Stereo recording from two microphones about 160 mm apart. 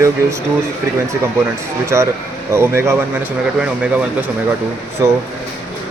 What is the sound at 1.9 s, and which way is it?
Speech, 15° right (ahead or behind).